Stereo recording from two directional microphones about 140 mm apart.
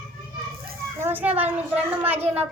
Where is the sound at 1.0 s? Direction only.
15° right (ahead or behind).